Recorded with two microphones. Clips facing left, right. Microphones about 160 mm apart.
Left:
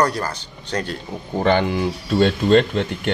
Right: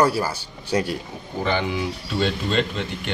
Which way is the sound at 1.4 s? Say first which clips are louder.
Left 6 dB; 55° left (ahead or behind).